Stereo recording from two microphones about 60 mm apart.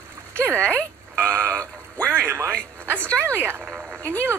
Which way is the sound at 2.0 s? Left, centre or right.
Right.